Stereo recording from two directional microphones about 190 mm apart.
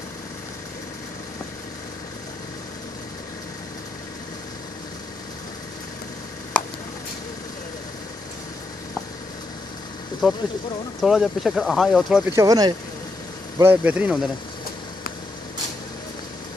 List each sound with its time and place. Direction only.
10.2 s speech: centre (ahead or behind)
12.3 s speech: 20° right (ahead or behind)